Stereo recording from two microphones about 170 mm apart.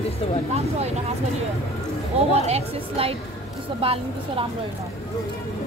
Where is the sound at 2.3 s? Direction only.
35° right (ahead or behind).